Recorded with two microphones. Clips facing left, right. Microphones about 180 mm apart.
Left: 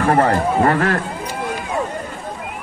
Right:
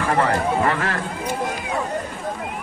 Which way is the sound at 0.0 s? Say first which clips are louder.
Left 4 dB; 45° left (ahead or behind).